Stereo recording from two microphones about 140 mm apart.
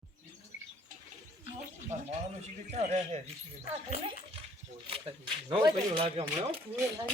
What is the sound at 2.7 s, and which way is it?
Speech, 50° right (ahead or behind).